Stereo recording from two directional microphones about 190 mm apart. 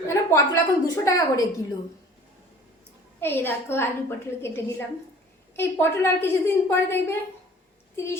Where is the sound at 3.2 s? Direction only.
10° left (ahead or behind).